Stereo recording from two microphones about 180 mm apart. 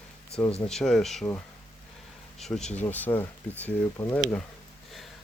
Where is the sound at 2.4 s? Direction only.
Centre (ahead or behind).